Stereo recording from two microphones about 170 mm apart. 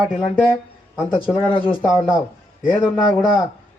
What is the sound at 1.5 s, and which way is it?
Speech, 30° left (ahead or behind).